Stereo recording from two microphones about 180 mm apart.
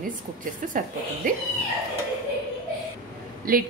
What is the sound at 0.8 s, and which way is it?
Speech, 50° right (ahead or behind).